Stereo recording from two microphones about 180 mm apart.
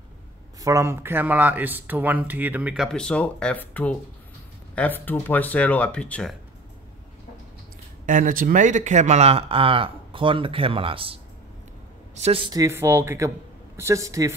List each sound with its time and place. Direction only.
0.6 s speech: 15° right (ahead or behind); by 6.3 s 5° left (ahead or behind)
8.0 s speech: 45° right (ahead or behind); by 11.1 s 30° right (ahead or behind)
12.2 s speech: 30° right (ahead or behind)
12.5 s speech: 15° right (ahead or behind)